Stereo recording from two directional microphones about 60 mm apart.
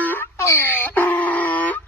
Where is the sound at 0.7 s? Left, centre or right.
Left.